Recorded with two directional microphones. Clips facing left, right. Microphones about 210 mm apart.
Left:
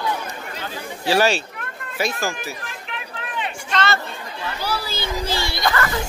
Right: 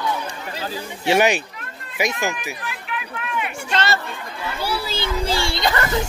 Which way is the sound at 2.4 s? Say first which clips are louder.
Right 1 dB; 35° left (ahead or behind).